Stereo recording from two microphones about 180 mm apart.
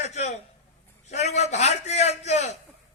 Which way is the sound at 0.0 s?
40° left (ahead or behind).